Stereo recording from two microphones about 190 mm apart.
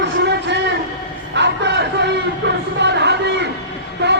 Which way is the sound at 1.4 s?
65° right (ahead or behind).